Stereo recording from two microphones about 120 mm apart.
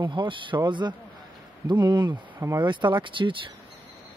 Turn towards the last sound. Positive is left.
turn(degrees=-45)  # may be behind; listen again after turning